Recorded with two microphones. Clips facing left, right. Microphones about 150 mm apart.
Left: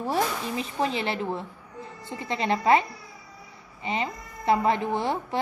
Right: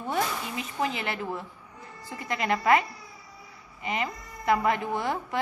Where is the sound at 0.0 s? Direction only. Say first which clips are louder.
Left 3 dB; 30° left (ahead or behind).